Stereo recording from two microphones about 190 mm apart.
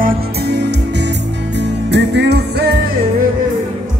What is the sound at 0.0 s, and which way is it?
Music, 60° right (ahead or behind).